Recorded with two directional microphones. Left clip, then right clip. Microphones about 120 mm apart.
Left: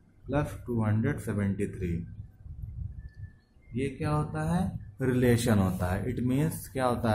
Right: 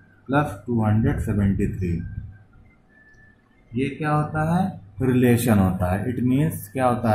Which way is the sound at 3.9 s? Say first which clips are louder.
Right 12 dB; 25° left (ahead or behind).